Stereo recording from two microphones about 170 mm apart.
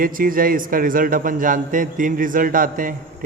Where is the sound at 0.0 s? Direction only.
55° right (ahead or behind).